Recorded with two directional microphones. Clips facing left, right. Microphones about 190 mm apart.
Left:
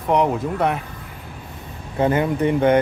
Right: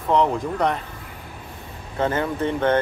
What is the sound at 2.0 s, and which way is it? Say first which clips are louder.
Speech: left 4 dB; 15° left (ahead or behind).